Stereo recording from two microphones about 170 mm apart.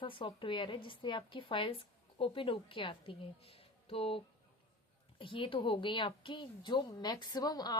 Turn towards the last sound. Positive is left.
turn(degrees=20)  # may be behind; listen again after turning